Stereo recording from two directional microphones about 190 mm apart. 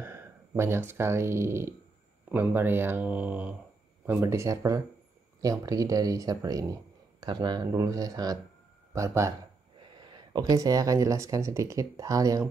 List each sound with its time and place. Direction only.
0.0 s speech: 15° right (ahead or behind)